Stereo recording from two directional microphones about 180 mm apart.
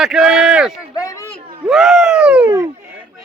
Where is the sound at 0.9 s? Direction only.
20° left (ahead or behind).